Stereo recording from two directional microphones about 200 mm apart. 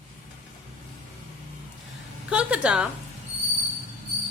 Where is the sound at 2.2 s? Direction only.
5° right (ahead or behind).